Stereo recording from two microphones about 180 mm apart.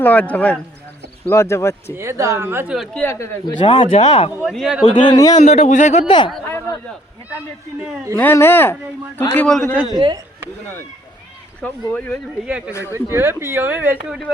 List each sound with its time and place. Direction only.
0.0 s speech: 10° left (ahead or behind)
2.0 s speech: 15° right (ahead or behind)
2.7 s a man's voice: centre (ahead or behind)
3.0 s speech: 15° left (ahead or behind); by 4.3 s 30° left (ahead or behind)
4.4 s a man's voice: centre (ahead or behind)
5.0 s speech: 20° left (ahead or behind)
5.4 s a man's voice: 40° left (ahead or behind)
6.1 s speech: 25° left (ahead or behind)
6.4 s a sound: 15° left (ahead or behind)
8.1 s speech: 15° left (ahead or behind)
9.9 s speech: 25° right (ahead or behind)
11.6 s speech: 10° left (ahead or behind)
12.5 s speech: 5° right (ahead or behind)